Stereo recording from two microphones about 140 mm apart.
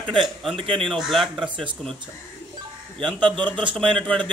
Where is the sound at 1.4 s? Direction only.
35° right (ahead or behind).